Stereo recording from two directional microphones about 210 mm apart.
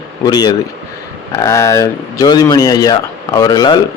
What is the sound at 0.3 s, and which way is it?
A man's voice, 20° left (ahead or behind).